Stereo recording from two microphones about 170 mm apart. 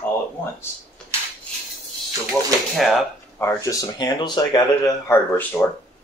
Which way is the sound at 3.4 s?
15° left (ahead or behind).